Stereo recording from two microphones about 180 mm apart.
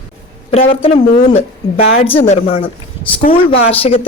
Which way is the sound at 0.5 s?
30° left (ahead or behind).